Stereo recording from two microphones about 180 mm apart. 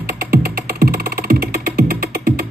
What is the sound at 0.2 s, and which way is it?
Music, 55° right (ahead or behind).